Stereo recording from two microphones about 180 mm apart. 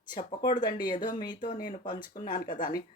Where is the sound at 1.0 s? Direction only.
50° left (ahead or behind).